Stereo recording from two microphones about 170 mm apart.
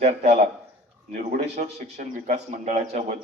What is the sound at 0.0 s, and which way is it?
Speech, 40° right (ahead or behind).